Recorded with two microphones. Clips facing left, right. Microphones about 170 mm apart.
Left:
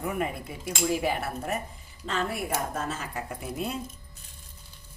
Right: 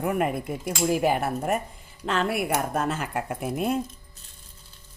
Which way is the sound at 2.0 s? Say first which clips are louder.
Right 5 dB; 70° right (ahead or behind).